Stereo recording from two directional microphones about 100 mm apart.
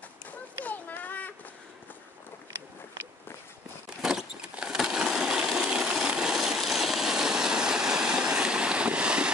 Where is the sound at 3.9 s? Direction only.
Centre (ahead or behind).